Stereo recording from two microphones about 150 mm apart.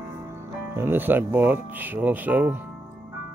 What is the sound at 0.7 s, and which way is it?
Speech, 15° right (ahead or behind).